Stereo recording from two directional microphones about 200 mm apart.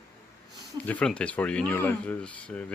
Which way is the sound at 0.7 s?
5° left (ahead or behind).